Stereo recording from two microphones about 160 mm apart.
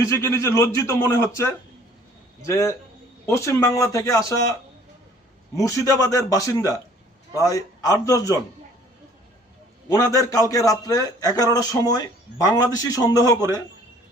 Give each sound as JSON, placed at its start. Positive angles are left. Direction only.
{"t": 0.0, "sound": "a man's voice", "side_deg": 15}
{"t": 5.5, "sound": "a man's voice", "side_deg": 20}
{"t": 9.9, "sound": "a man's voice", "side_deg": 20}